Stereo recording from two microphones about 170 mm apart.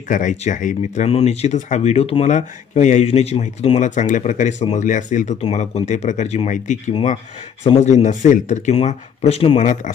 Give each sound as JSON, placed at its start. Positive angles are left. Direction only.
{"t": 0.1, "sound": "speech", "side_deg": 50}
{"t": 9.6, "sound": "speech", "side_deg": 45}